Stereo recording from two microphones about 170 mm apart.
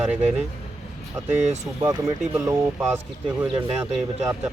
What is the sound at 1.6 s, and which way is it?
Speech, 20° right (ahead or behind).